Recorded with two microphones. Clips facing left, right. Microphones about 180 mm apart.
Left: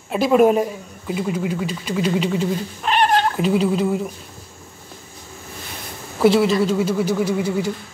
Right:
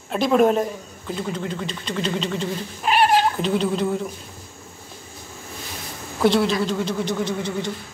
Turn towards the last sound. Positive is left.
turn(degrees=5)  # may be behind; listen again after turning